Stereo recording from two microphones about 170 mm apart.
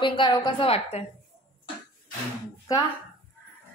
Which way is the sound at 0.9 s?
40° left (ahead or behind).